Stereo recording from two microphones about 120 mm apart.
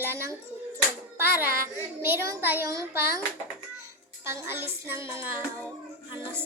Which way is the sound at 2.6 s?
25° right (ahead or behind).